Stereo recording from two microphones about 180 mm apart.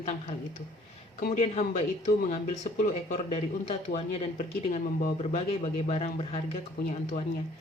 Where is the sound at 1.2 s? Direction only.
45° left (ahead or behind).